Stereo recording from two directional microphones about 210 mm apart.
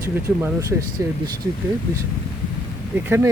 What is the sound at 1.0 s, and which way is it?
Speech, 15° right (ahead or behind).